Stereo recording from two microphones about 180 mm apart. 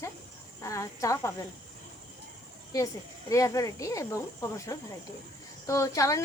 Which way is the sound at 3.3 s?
15° left (ahead or behind).